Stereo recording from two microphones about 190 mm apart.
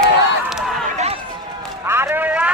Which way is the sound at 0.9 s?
35° right (ahead or behind).